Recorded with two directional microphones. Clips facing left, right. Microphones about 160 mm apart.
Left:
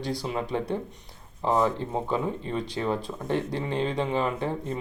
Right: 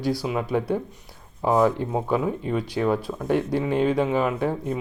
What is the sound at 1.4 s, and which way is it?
Speech, 15° right (ahead or behind).